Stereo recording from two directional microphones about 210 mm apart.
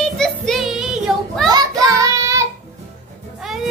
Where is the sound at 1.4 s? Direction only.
20° right (ahead or behind).